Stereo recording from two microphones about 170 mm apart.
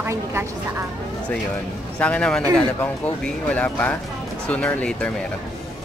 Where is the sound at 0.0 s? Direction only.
15° right (ahead or behind).